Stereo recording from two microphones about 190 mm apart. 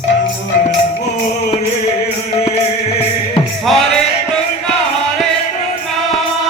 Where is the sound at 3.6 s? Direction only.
Centre (ahead or behind).